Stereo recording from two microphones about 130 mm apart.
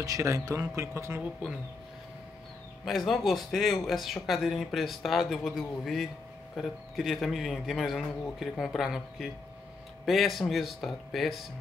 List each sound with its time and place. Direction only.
0.0 s speech: 25° right (ahead or behind)
2.8 s speech: centre (ahead or behind)